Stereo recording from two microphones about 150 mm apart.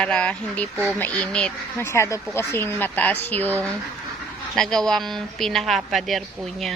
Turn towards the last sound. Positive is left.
turn(degrees=0)  # may be behind; listen again after turning